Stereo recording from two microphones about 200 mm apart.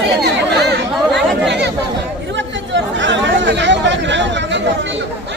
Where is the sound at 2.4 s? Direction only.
65° right (ahead or behind).